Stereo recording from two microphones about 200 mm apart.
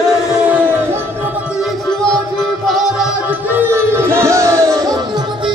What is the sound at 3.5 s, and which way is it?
Music, 10° right (ahead or behind).